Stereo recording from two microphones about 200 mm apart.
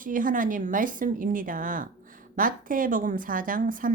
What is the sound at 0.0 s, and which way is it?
Speech, 40° right (ahead or behind).